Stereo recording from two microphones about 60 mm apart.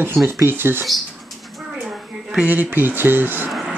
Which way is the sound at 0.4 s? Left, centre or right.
Right.